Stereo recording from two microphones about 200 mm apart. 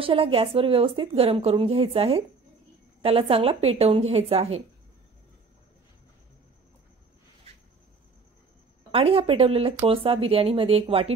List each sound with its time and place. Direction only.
0.0 s speech: 25° right (ahead or behind)
8.9 s speech: 30° right (ahead or behind)